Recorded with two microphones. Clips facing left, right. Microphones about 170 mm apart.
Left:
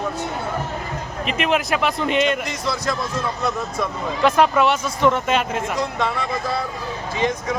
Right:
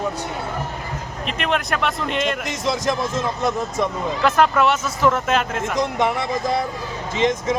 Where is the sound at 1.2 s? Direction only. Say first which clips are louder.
Left 2 dB; 5° left (ahead or behind).